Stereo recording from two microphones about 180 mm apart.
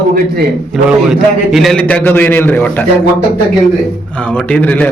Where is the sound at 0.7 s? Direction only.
Centre (ahead or behind).